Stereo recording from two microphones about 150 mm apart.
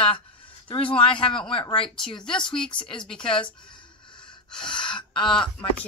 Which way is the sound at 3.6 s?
35° left (ahead or behind).